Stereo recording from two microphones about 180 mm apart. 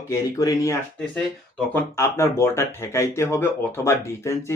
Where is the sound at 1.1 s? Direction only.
5° left (ahead or behind).